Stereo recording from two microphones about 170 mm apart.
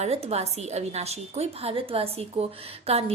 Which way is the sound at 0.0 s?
40° right (ahead or behind).